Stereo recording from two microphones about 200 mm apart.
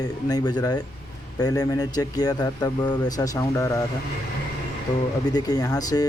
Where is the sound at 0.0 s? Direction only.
20° left (ahead or behind).